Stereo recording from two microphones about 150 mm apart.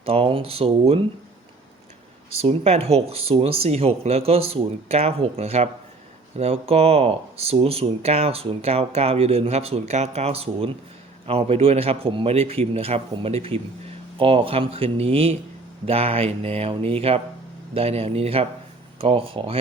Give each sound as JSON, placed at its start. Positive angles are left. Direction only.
{"t": 0.0, "sound": "a man's voice", "side_deg": -40}
{"t": 2.4, "sound": "a man's voice", "side_deg": -45}